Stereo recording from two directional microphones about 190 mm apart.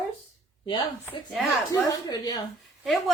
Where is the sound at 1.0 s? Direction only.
Centre (ahead or behind).